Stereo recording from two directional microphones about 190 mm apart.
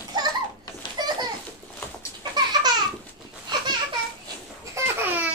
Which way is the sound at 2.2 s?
20° right (ahead or behind).